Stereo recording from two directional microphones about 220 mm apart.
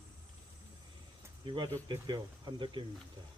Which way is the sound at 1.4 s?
20° right (ahead or behind).